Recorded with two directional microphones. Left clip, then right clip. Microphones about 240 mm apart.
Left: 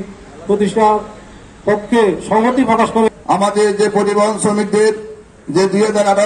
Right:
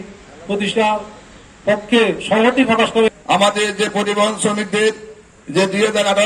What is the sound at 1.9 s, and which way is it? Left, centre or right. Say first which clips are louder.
Speech: left 2 dB; right.